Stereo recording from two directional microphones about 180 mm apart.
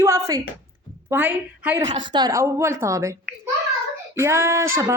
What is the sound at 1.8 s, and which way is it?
A woman's voice, 25° right (ahead or behind).